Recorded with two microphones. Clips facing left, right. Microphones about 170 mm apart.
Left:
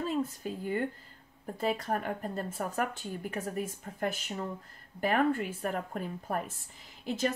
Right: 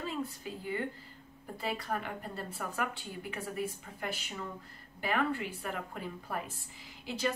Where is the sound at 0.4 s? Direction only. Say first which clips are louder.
Left 4 dB; 50° left (ahead or behind).